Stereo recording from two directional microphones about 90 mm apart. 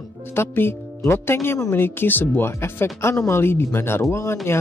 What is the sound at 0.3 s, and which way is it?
Speech, 25° left (ahead or behind).